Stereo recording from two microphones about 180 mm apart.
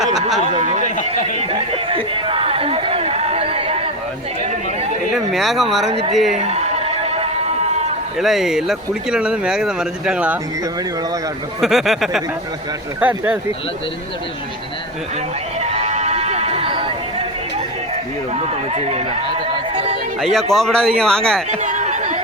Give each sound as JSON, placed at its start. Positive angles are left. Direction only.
{"t": 0.3, "sound": "speech", "side_deg": -40}
{"t": 2.2, "sound": "chatter", "side_deg": -30}
{"t": 5.3, "sound": "speech", "side_deg": 0}
{"t": 5.9, "sound": "speech", "side_deg": -35}
{"t": 6.3, "sound": "a sound", "side_deg": -35}
{"t": 8.2, "sound": "speech", "side_deg": 0}
{"t": 11.6, "sound": "speech", "side_deg": 0}
{"t": 15.6, "sound": "run", "side_deg": -35}
{"t": 18.7, "sound": "speech", "side_deg": -35}
{"t": 19.7, "sound": "a sound", "side_deg": -35}
{"t": 20.3, "sound": "speech", "side_deg": 0}
{"t": 21.5, "sound": "a sound", "side_deg": -40}